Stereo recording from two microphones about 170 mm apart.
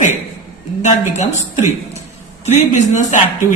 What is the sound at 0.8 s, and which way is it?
Speech, 45° left (ahead or behind).